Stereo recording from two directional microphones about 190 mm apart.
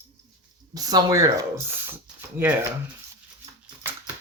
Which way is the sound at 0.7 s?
20° right (ahead or behind).